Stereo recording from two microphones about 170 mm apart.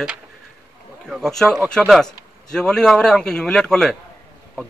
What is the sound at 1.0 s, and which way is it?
A man's voice, centre (ahead or behind).